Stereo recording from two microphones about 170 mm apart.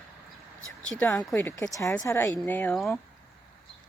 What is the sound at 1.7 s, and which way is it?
Speech, 15° left (ahead or behind).